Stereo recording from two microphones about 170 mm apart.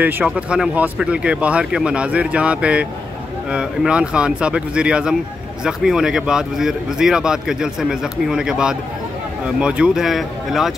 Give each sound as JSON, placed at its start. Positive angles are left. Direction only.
{"t": 0.0, "sound": "speech", "side_deg": -5}